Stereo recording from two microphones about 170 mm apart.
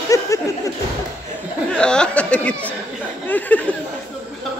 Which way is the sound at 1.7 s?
5° left (ahead or behind).